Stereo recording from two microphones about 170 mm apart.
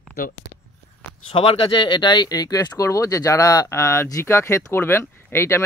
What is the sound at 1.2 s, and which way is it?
Speech, 35° left (ahead or behind).